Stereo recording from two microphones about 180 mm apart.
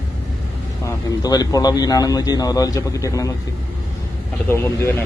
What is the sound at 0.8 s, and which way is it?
A man's voice, 20° left (ahead or behind).